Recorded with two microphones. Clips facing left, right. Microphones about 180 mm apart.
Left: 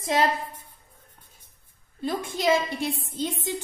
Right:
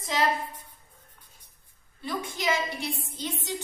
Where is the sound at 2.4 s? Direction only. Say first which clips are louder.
Left 7 dB; 50° left (ahead or behind).